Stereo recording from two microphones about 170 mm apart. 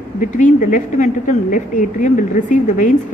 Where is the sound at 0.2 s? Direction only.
50° left (ahead or behind).